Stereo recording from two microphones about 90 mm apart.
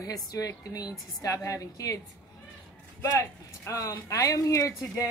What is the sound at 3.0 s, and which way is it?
Speech, 35° left (ahead or behind).